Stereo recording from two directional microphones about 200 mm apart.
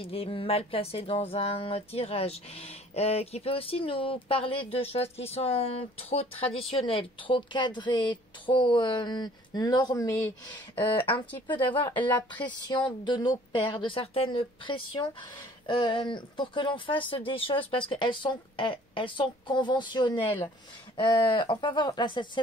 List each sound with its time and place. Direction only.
0.0 s a woman's voice: 30° left (ahead or behind)
6.3 s speech: 5° left (ahead or behind)
6.7 s a woman's voice: 25° left (ahead or behind)